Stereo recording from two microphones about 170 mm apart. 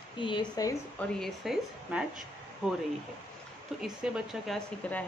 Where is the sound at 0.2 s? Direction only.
25° left (ahead or behind).